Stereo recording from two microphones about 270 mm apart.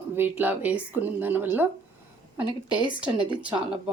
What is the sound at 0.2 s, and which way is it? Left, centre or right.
A woman's voice, centre.